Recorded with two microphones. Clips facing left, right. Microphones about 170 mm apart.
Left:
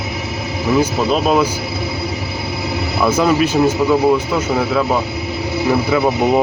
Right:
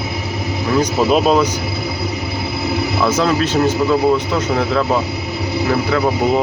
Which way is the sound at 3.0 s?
10° left (ahead or behind).